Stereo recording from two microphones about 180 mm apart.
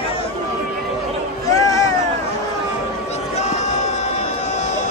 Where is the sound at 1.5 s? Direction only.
20° left (ahead or behind).